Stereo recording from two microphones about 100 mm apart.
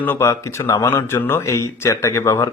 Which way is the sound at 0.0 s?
25° left (ahead or behind).